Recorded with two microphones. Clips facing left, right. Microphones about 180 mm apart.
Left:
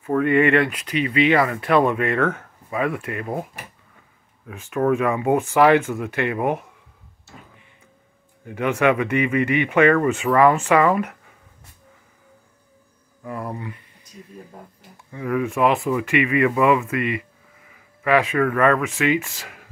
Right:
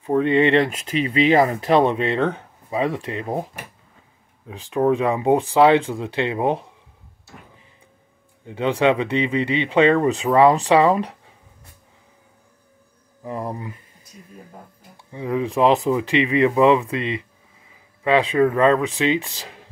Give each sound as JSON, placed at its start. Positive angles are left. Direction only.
{"t": 0.0, "sound": "speech", "side_deg": -20}
{"t": 4.5, "sound": "speech", "side_deg": -35}
{"t": 8.5, "sound": "speech", "side_deg": -25}
{"t": 10.2, "sound": "speech", "side_deg": -20}
{"t": 10.6, "sound": "speech", "side_deg": -30}
{"t": 13.6, "sound": "speech", "side_deg": -40}
{"t": 15.0, "sound": "speech", "side_deg": -20}